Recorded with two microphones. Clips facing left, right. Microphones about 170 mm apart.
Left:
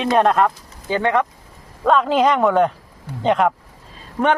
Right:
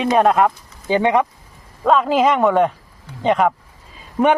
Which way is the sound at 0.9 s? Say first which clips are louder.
Right 3 dB; 20° right (ahead or behind).